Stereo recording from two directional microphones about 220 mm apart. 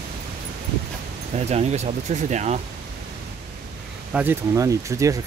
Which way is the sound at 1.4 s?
30° right (ahead or behind).